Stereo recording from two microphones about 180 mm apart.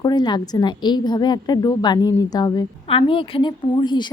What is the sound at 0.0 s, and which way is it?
A woman's voice, 25° left (ahead or behind).